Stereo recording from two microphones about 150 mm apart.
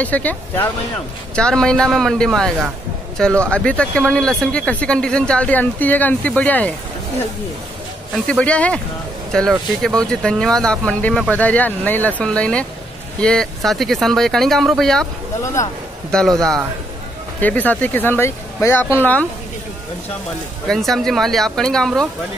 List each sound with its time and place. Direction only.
0.0 s speech: 10° left (ahead or behind)
8.1 s speech: 5° left (ahead or behind)
15.4 s speech: 20° left (ahead or behind)
16.1 s speech: 5° left (ahead or behind)
17.4 s speech: 10° left (ahead or behind)
20.6 s speech: 5° left (ahead or behind)